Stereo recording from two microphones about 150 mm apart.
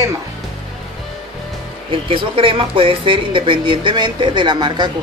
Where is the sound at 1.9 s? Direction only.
35° right (ahead or behind).